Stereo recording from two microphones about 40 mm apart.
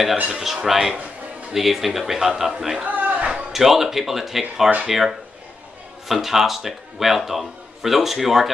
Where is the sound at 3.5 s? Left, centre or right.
Centre.